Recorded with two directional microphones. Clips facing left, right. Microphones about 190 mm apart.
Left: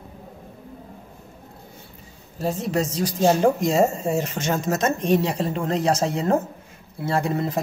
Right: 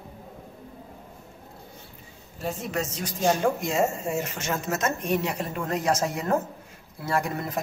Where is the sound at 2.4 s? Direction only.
35° left (ahead or behind).